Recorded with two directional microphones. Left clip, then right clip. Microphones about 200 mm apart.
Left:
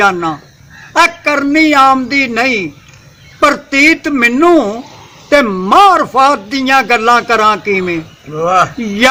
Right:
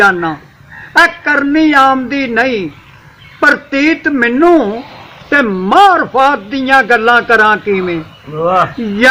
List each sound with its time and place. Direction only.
0.9 s a man's voice: 35° left (ahead or behind)
8.4 s speech: centre (ahead or behind)